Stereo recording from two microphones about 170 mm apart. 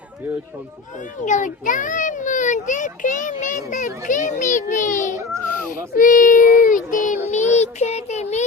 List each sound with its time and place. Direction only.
1.2 s a child's voice: 50° left (ahead or behind)
7.3 s child singing: 40° left (ahead or behind)